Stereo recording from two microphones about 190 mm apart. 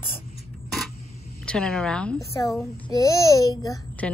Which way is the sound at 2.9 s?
15° left (ahead or behind).